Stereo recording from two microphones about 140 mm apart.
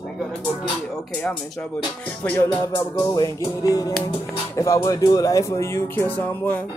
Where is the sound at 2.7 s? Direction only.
25° left (ahead or behind).